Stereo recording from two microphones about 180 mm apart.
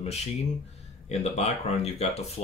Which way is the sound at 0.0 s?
35° left (ahead or behind).